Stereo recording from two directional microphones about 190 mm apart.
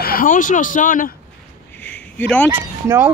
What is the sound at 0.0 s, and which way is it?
Speech, 50° left (ahead or behind).